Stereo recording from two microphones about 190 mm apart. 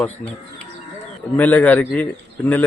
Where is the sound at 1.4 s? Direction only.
10° left (ahead or behind).